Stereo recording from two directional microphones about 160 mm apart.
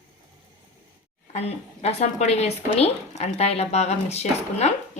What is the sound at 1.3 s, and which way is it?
Speech, 40° left (ahead or behind).